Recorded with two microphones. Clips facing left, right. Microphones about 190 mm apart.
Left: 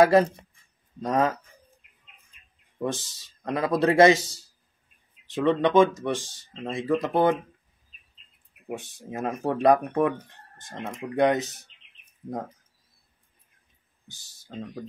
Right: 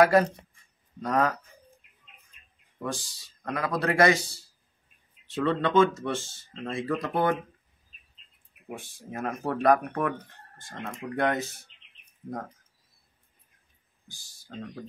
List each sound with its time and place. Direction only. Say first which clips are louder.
0.0 s speech: left 2 dB; 25° left (ahead or behind)
2.8 s speech: left 4 dB; 25° left (ahead or behind)
8.7 s speech: left 3 dB; 20° left (ahead or behind)
14.0 s speech: left 2 dB; 20° left (ahead or behind)